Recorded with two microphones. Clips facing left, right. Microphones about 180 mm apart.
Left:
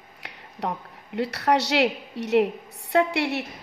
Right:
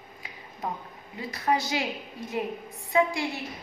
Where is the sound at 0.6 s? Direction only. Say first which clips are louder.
Left 4 dB; 70° left (ahead or behind).